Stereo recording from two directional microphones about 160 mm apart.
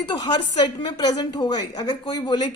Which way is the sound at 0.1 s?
30° left (ahead or behind).